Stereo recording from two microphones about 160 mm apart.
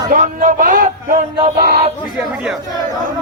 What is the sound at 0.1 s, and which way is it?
Speech, 55° right (ahead or behind).